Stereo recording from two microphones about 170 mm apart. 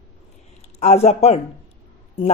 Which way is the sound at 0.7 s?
40° left (ahead or behind).